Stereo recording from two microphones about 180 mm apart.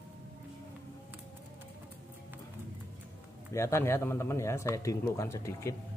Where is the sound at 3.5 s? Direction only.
15° left (ahead or behind).